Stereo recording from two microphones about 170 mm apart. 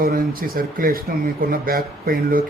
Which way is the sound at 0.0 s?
60° right (ahead or behind).